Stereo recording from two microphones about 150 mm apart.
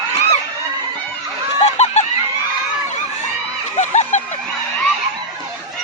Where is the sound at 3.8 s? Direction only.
50° left (ahead or behind).